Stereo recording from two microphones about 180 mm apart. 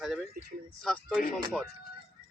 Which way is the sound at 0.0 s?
Centre (ahead or behind).